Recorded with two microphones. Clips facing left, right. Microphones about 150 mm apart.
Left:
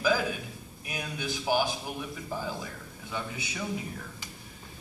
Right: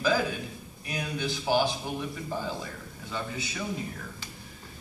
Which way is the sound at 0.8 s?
10° left (ahead or behind).